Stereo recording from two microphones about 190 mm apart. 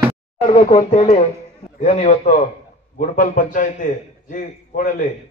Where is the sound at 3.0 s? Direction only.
45° left (ahead or behind).